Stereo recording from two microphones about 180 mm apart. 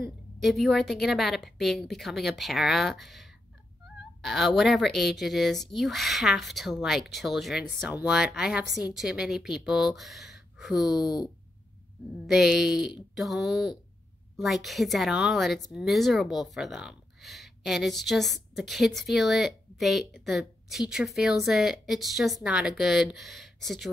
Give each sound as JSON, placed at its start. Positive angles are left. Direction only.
{"t": 0.0, "sound": "speech", "side_deg": 0}
{"t": 12.3, "sound": "speech", "side_deg": -5}